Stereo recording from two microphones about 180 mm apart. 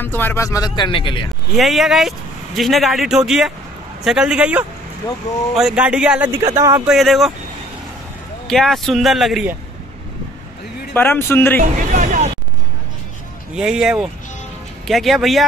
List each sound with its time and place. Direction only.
0.0 s speech: 10° left (ahead or behind); by 1.3 s 25° left (ahead or behind)
1.5 s speech: centre (ahead or behind)
6.9 s speech: centre (ahead or behind)
8.5 s speech: centre (ahead or behind)
10.9 s speech: 10° left (ahead or behind)
11.9 s vehicle: 40° right (ahead or behind)
13.6 s speech: 5° right (ahead or behind)